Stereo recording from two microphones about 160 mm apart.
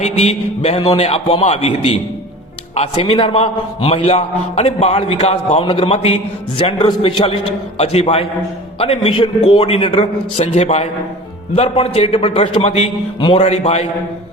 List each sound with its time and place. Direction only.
0.0 s a man's voice: 45° left (ahead or behind)